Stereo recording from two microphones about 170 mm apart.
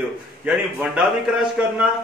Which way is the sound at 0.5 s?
5° right (ahead or behind).